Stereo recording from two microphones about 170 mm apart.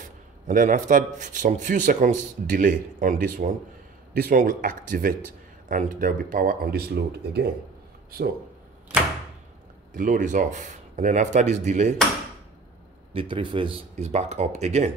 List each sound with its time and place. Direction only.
0.0 s a man's voice: 50° right (ahead or behind); by 7.4 s 70° right (ahead or behind)
9.9 s a man's voice: 50° right (ahead or behind)
13.1 s speech: 30° right (ahead or behind)